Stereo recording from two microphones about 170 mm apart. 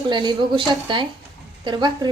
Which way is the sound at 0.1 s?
25° right (ahead or behind).